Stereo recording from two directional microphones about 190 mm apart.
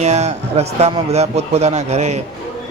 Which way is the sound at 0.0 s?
35° right (ahead or behind).